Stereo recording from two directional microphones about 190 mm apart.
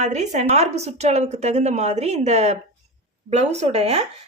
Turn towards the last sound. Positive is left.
turn(degrees=-35)  # may be behind; listen again after turning